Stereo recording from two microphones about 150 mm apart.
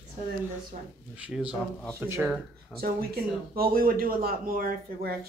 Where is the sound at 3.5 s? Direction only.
80° right.